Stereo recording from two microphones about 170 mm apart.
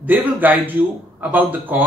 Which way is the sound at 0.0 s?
10° right (ahead or behind).